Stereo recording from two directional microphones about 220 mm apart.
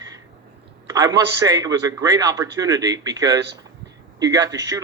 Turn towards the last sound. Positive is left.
turn(degrees=-15)  # may be behind; listen again after turning